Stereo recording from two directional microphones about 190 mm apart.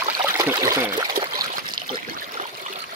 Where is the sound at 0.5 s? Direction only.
15° right (ahead or behind).